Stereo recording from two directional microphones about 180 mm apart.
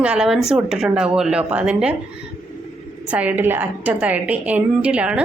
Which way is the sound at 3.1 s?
10° right (ahead or behind).